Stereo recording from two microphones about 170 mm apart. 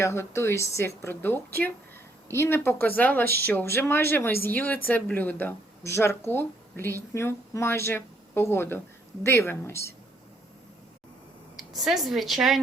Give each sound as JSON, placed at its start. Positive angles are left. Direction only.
{"t": 0.0, "sound": "speech", "side_deg": 15}
{"t": 3.2, "sound": "speech", "side_deg": -65}
{"t": 3.5, "sound": "speech", "side_deg": 10}
{"t": 11.5, "sound": "a woman's voice", "side_deg": 0}